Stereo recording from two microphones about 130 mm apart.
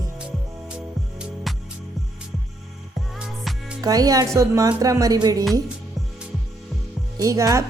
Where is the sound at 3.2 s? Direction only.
5° right (ahead or behind).